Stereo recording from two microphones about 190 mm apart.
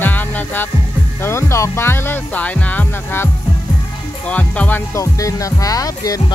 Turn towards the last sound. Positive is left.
turn(degrees=20)  # may be behind; listen again after turning